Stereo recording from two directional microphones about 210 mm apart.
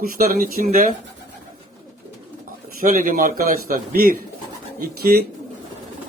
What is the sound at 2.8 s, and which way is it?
A man's voice, 40° right (ahead or behind).